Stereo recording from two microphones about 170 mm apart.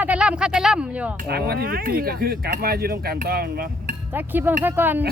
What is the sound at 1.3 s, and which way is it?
Speech, 65° right (ahead or behind).